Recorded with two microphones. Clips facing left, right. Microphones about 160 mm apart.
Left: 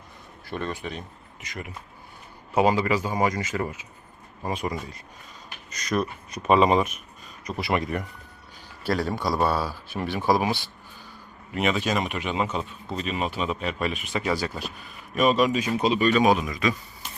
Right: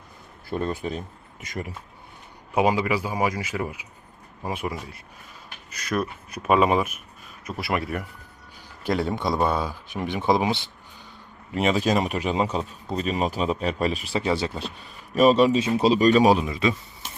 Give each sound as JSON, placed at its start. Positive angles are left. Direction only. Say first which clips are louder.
{"t": 0.5, "sound": "a man's voice", "louder": "right 4 dB", "side_deg": -35}
{"t": 2.5, "sound": "speech", "louder": "even", "side_deg": -10}
{"t": 8.8, "sound": "speech", "louder": "right 1 dB", "side_deg": -20}
{"t": 11.5, "sound": "a man's voice", "louder": "right 3 dB", "side_deg": -35}